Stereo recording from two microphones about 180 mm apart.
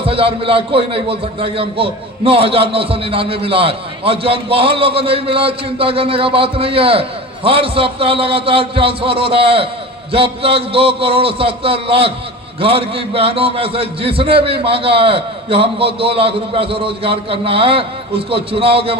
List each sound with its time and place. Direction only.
0.0 s a man's voice: 30° right (ahead or behind)